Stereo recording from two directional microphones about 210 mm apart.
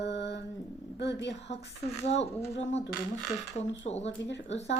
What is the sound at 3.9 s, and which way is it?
Speech, 30° left (ahead or behind).